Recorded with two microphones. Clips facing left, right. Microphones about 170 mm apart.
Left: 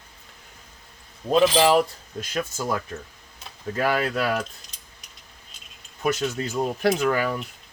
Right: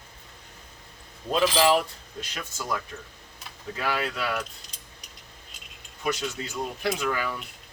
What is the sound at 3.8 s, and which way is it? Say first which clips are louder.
Speech: left 6 dB; 50° left (ahead or behind).